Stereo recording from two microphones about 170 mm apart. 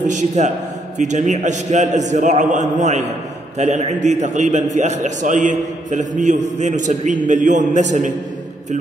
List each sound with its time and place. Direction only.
0.1 s a man's voice: 45° right (ahead or behind)